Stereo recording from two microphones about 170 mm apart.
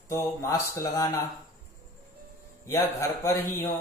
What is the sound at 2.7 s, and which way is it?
Speech, 15° left (ahead or behind).